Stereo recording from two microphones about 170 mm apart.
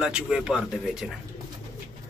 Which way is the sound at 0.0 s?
5° right (ahead or behind).